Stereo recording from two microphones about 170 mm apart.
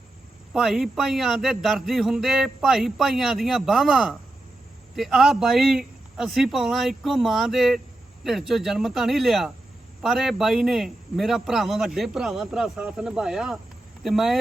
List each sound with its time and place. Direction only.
0.5 s speech: centre (ahead or behind)